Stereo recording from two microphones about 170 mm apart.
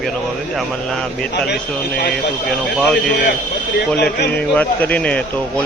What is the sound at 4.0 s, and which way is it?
Speech, 75° left (ahead or behind).